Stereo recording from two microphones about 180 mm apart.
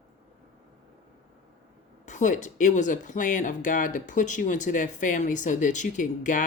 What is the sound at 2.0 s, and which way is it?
Speech, 45° left (ahead or behind).